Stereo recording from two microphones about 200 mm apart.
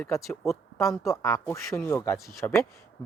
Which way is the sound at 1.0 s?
15° left (ahead or behind).